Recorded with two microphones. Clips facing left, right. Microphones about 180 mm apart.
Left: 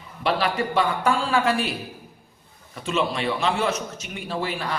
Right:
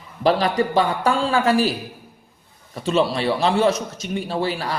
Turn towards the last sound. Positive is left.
turn(degrees=-35)  # may be behind; listen again after turning